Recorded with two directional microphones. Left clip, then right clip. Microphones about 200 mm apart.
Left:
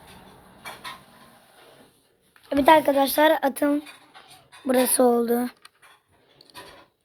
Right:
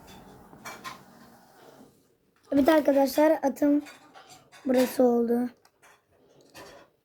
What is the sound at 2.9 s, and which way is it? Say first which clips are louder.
Speech: left 2 dB; 20° left (ahead or behind).